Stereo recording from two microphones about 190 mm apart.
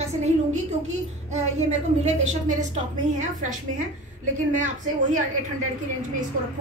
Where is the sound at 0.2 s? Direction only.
35° right (ahead or behind).